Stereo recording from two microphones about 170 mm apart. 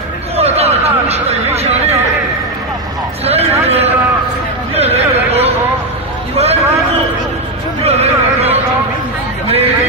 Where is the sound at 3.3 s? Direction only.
40° right (ahead or behind).